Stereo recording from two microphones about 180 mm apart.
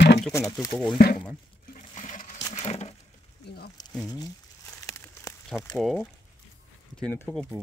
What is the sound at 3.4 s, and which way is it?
Speech, 65° left (ahead or behind).